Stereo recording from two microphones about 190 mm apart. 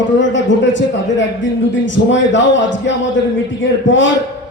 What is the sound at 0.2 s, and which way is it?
A man's voice, 75° left (ahead or behind).